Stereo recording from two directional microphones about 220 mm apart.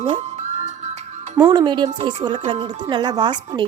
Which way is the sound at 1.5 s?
20° right (ahead or behind).